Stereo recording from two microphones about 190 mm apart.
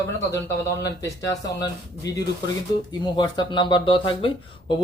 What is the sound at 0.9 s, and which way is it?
Speech, 15° left (ahead or behind).